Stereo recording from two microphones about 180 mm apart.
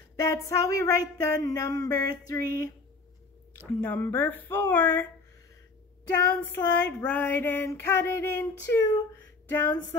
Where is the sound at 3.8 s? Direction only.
10° left (ahead or behind).